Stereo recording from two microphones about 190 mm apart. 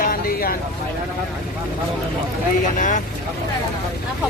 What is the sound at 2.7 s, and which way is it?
Speech, 40° left (ahead or behind).